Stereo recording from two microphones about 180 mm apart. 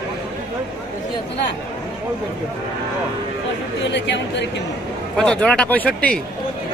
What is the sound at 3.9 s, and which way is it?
Speech, 75° left (ahead or behind).